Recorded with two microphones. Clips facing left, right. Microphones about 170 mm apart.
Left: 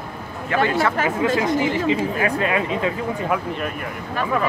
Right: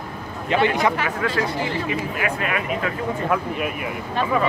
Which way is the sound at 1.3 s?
20° left (ahead or behind).